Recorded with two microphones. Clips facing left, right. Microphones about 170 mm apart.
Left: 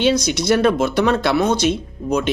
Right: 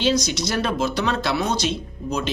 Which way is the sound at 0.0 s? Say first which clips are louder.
Left 4 dB; 60° left (ahead or behind).